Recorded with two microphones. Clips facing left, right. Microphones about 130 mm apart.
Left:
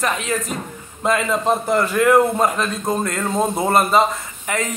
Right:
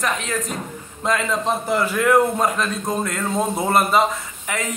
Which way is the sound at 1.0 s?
5° left (ahead or behind).